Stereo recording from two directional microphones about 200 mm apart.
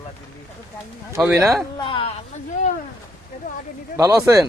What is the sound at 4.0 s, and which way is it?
Speech, 15° right (ahead or behind).